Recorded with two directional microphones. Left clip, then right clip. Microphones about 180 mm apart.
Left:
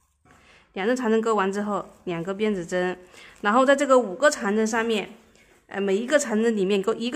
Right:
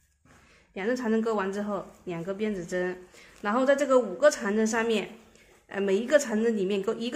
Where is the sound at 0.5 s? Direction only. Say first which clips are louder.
Left 5 dB; 20° left (ahead or behind).